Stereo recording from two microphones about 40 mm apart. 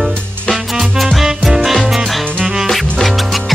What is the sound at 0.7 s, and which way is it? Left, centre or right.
Music, centre.